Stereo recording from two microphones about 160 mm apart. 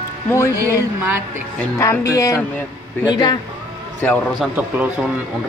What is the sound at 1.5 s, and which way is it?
Speech, 15° left (ahead or behind).